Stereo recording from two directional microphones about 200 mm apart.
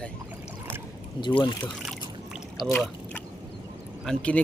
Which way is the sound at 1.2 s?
25° left (ahead or behind).